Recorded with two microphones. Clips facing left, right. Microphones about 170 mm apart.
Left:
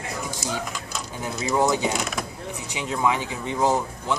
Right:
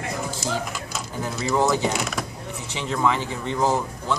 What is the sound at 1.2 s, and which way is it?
Speech, 20° left (ahead or behind).